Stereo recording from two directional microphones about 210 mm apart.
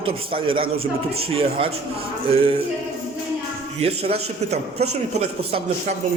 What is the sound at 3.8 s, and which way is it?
Speech, 30° right (ahead or behind).